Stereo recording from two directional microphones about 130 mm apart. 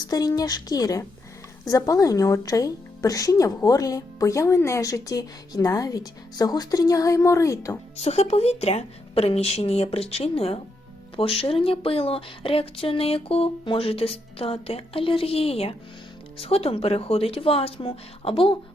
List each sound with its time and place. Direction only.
0.0 s a woman's voice: 30° left (ahead or behind)
7.9 s speech: 55° left (ahead or behind)